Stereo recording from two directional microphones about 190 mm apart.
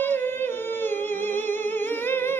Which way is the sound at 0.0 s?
10° left (ahead or behind).